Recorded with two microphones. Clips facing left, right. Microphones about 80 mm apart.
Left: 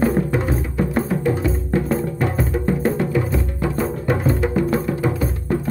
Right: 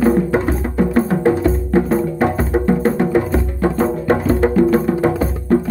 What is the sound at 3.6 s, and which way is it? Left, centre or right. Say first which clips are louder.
Music: right 6 dB; right.